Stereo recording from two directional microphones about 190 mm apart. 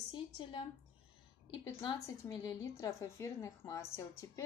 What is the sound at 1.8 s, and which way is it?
A woman's voice, 25° left (ahead or behind).